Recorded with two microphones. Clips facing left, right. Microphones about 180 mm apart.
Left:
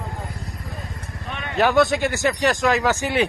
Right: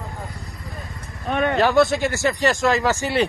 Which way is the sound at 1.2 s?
45° right (ahead or behind).